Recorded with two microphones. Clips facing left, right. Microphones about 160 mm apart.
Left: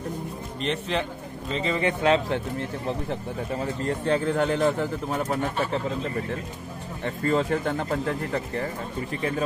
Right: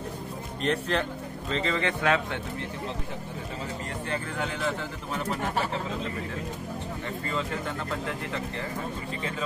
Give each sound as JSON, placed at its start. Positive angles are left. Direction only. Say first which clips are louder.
{"t": 0.6, "sound": "speech", "louder": "even", "side_deg": 0}
{"t": 1.5, "sound": "speech", "louder": "left 3 dB", "side_deg": 10}
{"t": 4.3, "sound": "speech", "louder": "left 8 dB", "side_deg": 55}
{"t": 7.2, "sound": "speech", "louder": "left 10 dB", "side_deg": 50}